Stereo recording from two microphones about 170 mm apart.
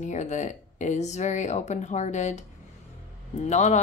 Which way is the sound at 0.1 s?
45° left (ahead or behind).